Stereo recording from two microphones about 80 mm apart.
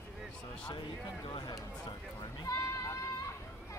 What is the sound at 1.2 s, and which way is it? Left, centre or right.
Speech, left.